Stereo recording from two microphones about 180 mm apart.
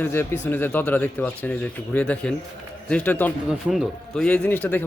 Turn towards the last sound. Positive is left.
turn(degrees=10)  # may be behind; listen again after turning